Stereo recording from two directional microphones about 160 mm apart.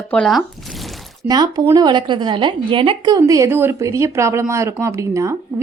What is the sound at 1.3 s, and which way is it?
Speech, 25° right (ahead or behind).